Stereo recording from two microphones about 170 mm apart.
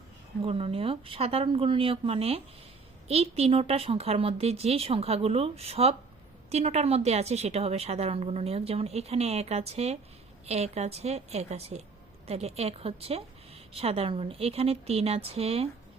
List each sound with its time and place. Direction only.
0.4 s a woman's voice: 35° right (ahead or behind)